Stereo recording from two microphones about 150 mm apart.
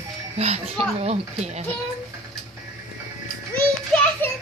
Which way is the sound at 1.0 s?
45° right (ahead or behind).